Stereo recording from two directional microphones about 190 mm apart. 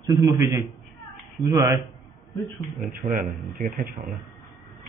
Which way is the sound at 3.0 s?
45° right (ahead or behind).